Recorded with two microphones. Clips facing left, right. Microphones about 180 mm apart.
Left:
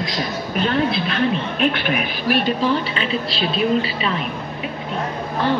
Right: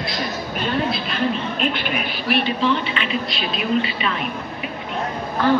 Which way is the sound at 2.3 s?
40° left (ahead or behind).